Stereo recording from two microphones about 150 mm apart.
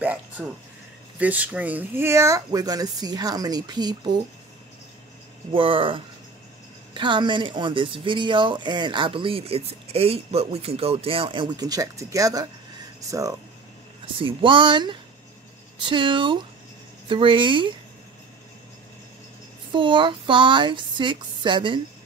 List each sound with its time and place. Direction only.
0.0 s a sound: 10° right (ahead or behind)
1.2 s speech: 10° right (ahead or behind); by 4.1 s 30° right (ahead or behind)
5.5 s speech: 35° right (ahead or behind)
14.2 s speech: 35° right (ahead or behind)
19.7 s speech: 35° right (ahead or behind)